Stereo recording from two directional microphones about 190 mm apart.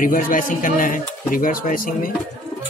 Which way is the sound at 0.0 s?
45° left (ahead or behind).